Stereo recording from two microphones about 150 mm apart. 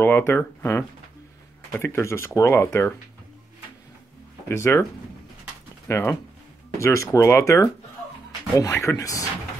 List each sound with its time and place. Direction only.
0.0 s speech: 15° left (ahead or behind)
4.5 s speech: 15° left (ahead or behind)
5.9 s speech: 15° left (ahead or behind)